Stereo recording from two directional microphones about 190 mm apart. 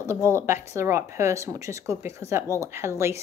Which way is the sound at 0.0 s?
15° right (ahead or behind).